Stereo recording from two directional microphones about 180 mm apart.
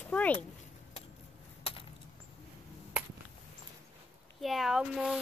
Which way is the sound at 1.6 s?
30° left (ahead or behind).